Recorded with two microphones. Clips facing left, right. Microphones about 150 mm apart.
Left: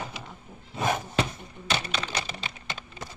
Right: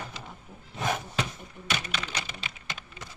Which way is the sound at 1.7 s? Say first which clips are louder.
Left 3 dB; 30° left (ahead or behind).